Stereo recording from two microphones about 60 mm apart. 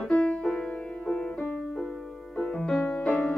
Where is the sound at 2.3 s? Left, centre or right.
Centre.